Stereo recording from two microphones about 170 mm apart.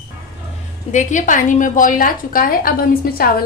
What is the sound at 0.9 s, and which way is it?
A woman's voice, 50° left (ahead or behind).